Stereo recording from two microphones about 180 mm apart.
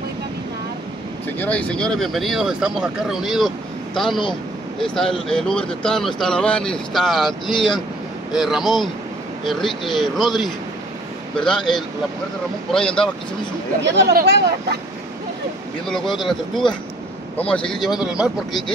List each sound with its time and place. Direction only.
1.4 s speech: 10° left (ahead or behind)
13.7 s speech: 80° right
14.1 s speech: 70° right (ahead or behind)
16.2 s speech: centre (ahead or behind)